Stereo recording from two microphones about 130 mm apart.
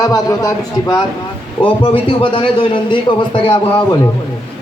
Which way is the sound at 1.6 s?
40° left (ahead or behind).